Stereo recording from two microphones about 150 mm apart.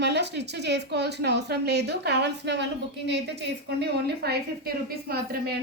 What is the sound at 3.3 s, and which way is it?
A woman's voice, 90° right.